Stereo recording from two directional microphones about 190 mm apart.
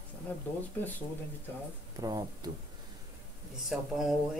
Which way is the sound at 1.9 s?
20° right (ahead or behind).